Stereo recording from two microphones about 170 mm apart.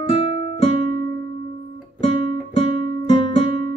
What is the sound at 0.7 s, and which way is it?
Music, 55° right (ahead or behind).